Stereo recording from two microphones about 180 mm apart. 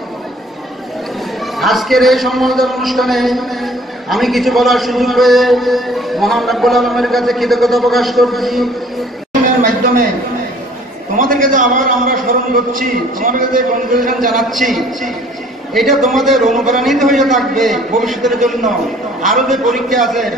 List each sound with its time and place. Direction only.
1.6 s a man's voice: centre (ahead or behind)
11.1 s a man's voice: 50° right (ahead or behind)
14.3 s a man's voice: centre (ahead or behind)